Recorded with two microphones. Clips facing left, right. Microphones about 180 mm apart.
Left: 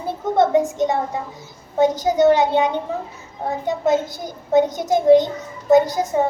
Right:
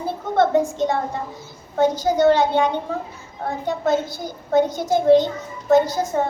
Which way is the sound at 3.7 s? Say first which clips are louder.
Left 2 dB; 15° left (ahead or behind).